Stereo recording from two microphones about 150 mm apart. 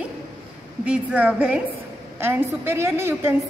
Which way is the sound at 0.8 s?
10° right (ahead or behind).